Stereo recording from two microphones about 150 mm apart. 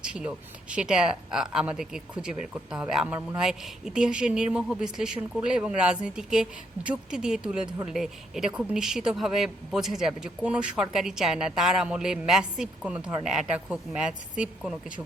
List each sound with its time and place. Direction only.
0.0 s a woman's voice: 5° right (ahead or behind)